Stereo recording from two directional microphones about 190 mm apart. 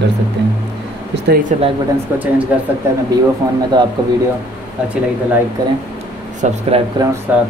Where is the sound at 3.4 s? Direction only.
15° right (ahead or behind).